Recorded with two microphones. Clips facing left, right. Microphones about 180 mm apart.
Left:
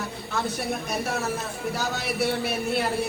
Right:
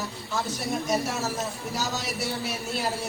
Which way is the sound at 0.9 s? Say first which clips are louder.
Right 1 dB; 60° left (ahead or behind).